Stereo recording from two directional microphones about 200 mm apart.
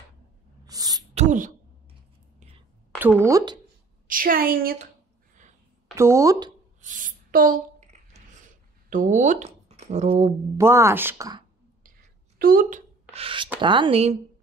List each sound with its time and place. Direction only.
0.7 s a sound: 20° right (ahead or behind)
1.1 s speech: 40° right (ahead or behind)
3.3 s speech: 15° right (ahead or behind)
4.1 s a woman's voice: 45° right (ahead or behind)
5.9 s speech: 15° right (ahead or behind)
6.8 s a sound: 40° right (ahead or behind)
8.9 s speech: 40° right (ahead or behind)
10.6 s speech: 15° right (ahead or behind)
12.4 s a woman's voice: 45° right (ahead or behind)
13.1 s speech: 25° right (ahead or behind)